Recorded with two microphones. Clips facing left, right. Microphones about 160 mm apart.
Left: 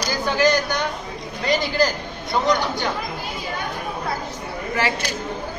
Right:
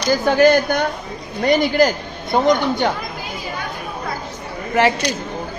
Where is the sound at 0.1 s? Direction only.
50° right (ahead or behind).